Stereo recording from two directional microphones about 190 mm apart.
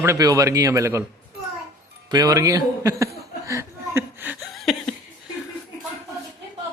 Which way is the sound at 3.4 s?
15° right (ahead or behind).